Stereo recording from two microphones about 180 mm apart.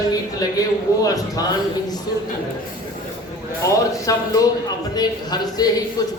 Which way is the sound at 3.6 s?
20° left (ahead or behind).